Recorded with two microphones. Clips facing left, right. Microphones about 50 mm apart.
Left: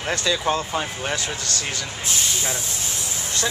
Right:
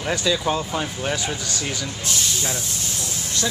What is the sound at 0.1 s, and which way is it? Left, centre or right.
Speech, centre.